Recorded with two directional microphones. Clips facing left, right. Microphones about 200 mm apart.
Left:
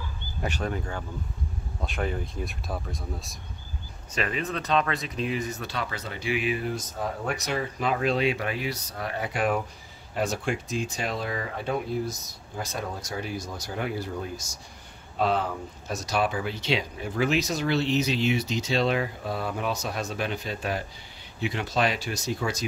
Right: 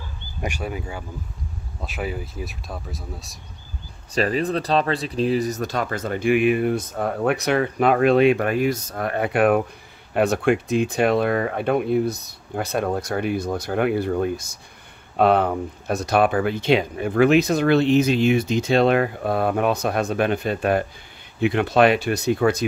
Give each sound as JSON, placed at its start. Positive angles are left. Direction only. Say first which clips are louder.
{"t": 0.4, "sound": "speech", "louder": "right 2 dB", "side_deg": -10}
{"t": 4.1, "sound": "speech", "louder": "right 8 dB", "side_deg": -35}